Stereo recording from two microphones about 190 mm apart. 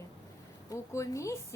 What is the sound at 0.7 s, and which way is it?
Speech, 15° left (ahead or behind).